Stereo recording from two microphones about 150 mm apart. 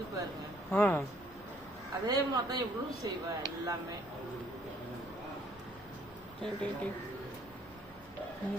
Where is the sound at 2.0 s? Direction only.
25° right (ahead or behind).